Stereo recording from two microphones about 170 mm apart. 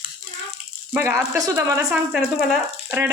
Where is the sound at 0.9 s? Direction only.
15° right (ahead or behind).